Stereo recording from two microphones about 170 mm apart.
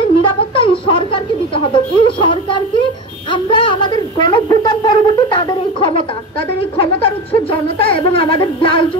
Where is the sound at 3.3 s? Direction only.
30° left (ahead or behind).